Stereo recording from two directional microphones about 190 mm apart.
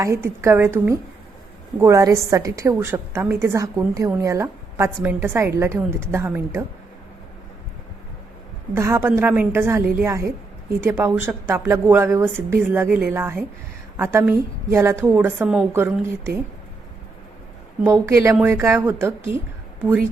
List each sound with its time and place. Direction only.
0.0 s a woman's voice: 15° right (ahead or behind)
8.7 s a woman's voice: 15° right (ahead or behind)
17.8 s a woman's voice: 15° right (ahead or behind)